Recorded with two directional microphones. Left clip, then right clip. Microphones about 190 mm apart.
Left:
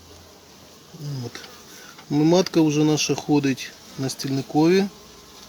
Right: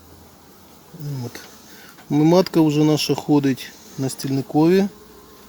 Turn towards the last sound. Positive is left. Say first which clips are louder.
# right 2 dB
turn(degrees=-35)  # may be behind; listen again after turning